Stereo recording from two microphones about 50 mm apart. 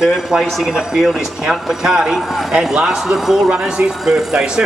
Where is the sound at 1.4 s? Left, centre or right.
Centre.